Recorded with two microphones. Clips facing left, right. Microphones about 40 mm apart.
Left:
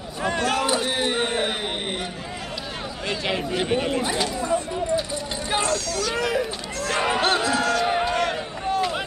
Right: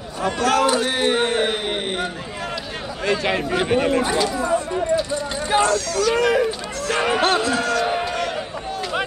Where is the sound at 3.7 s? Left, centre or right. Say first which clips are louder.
Right 6 dB; right.